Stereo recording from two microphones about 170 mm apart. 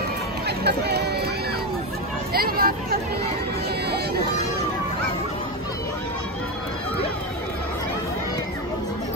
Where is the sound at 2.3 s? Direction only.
60° right (ahead or behind).